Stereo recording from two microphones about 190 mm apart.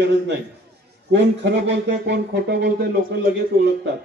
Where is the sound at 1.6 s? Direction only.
65° right (ahead or behind).